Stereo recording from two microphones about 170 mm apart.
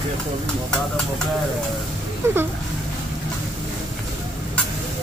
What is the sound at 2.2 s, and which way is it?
Speech, 15° right (ahead or behind).